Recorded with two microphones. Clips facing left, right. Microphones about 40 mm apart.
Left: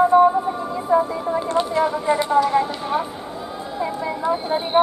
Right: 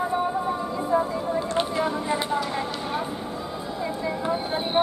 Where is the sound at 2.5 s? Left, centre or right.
Centre.